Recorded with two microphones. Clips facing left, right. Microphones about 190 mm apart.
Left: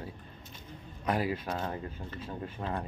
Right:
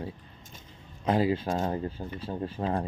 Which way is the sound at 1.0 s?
25° right (ahead or behind).